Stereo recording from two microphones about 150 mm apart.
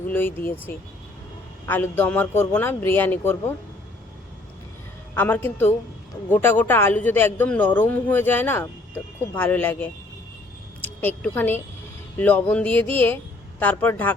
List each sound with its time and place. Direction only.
0.1 s a man's voice: 15° left (ahead or behind)
1.6 s a man's voice: 15° left (ahead or behind)
5.1 s a man's voice: 15° left (ahead or behind)